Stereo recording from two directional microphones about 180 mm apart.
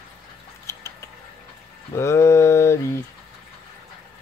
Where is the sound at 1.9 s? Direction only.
15° left (ahead or behind).